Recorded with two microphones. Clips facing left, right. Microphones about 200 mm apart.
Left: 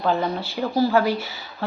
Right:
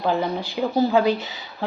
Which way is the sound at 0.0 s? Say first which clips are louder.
Even; 15° right (ahead or behind).